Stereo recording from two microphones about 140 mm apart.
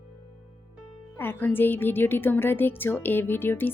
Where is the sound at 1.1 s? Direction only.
15° left (ahead or behind).